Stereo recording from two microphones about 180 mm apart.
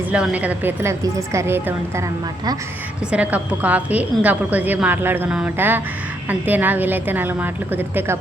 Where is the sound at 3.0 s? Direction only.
5° right (ahead or behind).